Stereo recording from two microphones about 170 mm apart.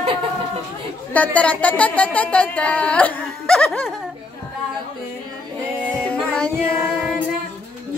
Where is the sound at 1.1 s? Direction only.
10° left (ahead or behind).